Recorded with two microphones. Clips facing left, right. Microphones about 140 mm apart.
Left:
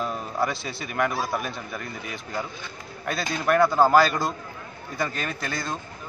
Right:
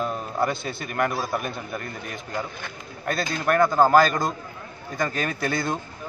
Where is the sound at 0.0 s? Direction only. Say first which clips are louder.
Right 2 dB; centre (ahead or behind).